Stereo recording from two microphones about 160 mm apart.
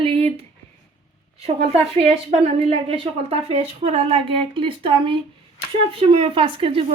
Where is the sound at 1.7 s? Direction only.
40° right (ahead or behind).